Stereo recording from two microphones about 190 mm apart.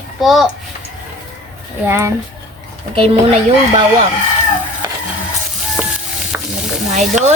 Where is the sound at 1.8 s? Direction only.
15° right (ahead or behind).